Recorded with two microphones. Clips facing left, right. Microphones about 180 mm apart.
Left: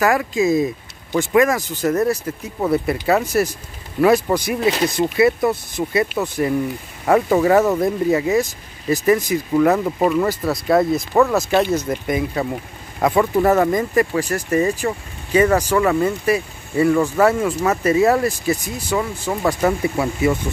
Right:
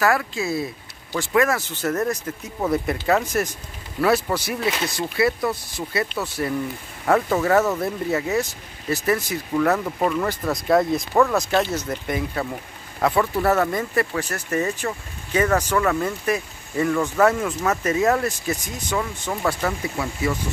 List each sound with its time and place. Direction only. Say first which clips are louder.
0.0 s speech: left 5 dB; 15° left (ahead or behind)
19.6 s speech: left 7 dB; 30° left (ahead or behind)